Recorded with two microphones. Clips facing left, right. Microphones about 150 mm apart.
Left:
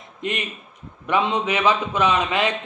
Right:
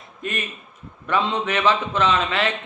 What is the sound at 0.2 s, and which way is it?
A man's voice, 20° left (ahead or behind).